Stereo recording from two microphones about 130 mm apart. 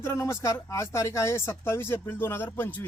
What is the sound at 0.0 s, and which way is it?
Speech, 20° left (ahead or behind).